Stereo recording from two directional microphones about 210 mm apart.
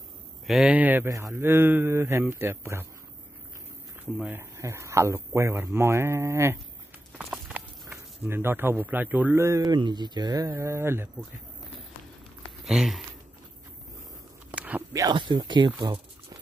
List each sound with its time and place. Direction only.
0.5 s speech: 5° right (ahead or behind)
4.0 s speech: 10° right (ahead or behind)
7.2 s walk: centre (ahead or behind)
7.9 s speech: 10° right (ahead or behind)
12.6 s a sound: centre (ahead or behind)
14.5 s speech: 5° right (ahead or behind)